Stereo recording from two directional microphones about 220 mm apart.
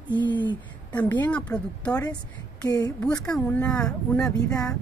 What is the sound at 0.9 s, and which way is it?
Speech, 5° left (ahead or behind).